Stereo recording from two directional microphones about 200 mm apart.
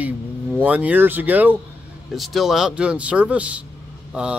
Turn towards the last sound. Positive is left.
turn(degrees=-5)  # may be behind; listen again after turning